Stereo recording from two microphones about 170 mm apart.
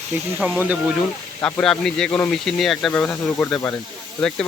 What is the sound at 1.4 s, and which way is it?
Speech, 10° left (ahead or behind).